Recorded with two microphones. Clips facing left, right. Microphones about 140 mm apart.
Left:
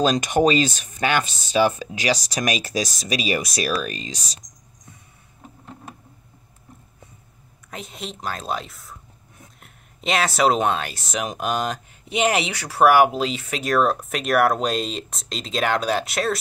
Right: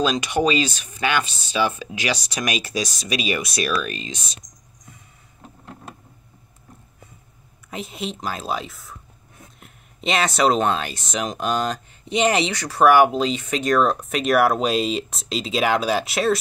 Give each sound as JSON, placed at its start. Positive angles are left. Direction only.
{"t": 0.0, "sound": "speech", "side_deg": 45}
{"t": 7.7, "sound": "speech", "side_deg": 0}